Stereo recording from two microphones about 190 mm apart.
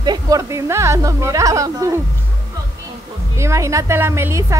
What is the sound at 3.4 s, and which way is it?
A woman's voice, 15° right (ahead or behind).